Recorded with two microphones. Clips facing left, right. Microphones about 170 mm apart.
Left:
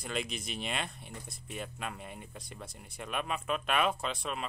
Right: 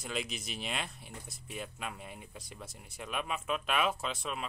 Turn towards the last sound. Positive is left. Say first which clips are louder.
# left 1 dB
turn(degrees=0)  # may be behind; listen again after turning